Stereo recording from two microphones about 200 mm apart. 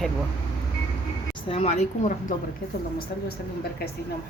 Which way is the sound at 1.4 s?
30° left (ahead or behind).